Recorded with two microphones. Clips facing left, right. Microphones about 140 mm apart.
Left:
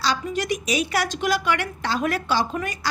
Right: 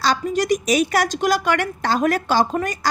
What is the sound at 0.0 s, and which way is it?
A woman's voice, 45° right (ahead or behind).